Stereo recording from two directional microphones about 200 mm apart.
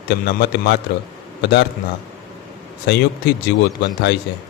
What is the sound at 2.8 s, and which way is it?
Speech, 55° left (ahead or behind).